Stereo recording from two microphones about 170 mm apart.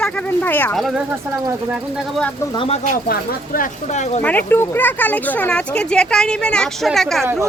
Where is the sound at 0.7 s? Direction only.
Centre (ahead or behind).